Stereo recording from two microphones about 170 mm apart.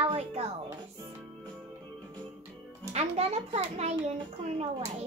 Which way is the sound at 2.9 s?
40° right (ahead or behind).